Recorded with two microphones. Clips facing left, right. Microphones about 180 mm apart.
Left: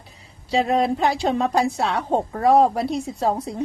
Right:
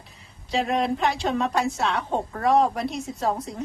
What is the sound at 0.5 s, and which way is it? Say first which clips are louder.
A woman's voice: left 4 dB; 35° left (ahead or behind).